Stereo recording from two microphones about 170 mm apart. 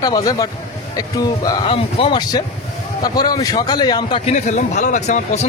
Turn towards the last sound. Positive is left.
turn(degrees=45)  # may be behind; listen again after turning